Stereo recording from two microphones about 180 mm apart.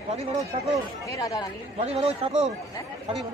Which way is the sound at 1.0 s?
20° left (ahead or behind).